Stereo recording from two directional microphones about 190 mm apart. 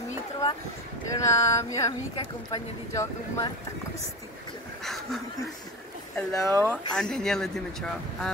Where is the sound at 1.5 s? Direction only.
15° left (ahead or behind).